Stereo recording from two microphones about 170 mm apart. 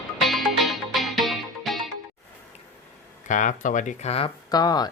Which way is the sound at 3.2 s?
50° left (ahead or behind).